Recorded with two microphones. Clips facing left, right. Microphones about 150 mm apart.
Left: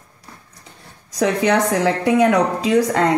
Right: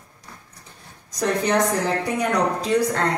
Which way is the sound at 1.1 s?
90° left.